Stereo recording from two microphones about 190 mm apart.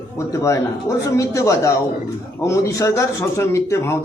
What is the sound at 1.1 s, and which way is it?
A man's voice, 15° left (ahead or behind).